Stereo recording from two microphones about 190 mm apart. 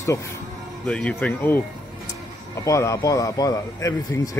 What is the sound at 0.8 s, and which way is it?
Speech, 5° left (ahead or behind).